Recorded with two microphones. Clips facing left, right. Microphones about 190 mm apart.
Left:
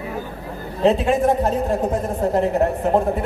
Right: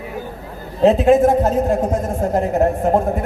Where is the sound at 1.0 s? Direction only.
40° right (ahead or behind).